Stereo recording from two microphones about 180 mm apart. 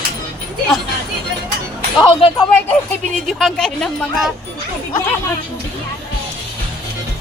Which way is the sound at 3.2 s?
5° left (ahead or behind).